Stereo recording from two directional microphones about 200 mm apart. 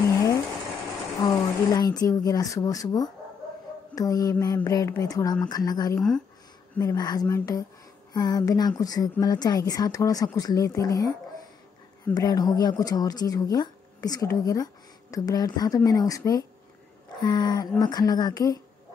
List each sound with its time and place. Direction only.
1.2 s speech: 20° left (ahead or behind)
3.9 s a sound: 15° left (ahead or behind)
5.5 s speech: 20° left (ahead or behind)
5.9 s speech: 5° left (ahead or behind)
6.7 s a sound: 15° left (ahead or behind)
8.1 s speech: 20° left (ahead or behind)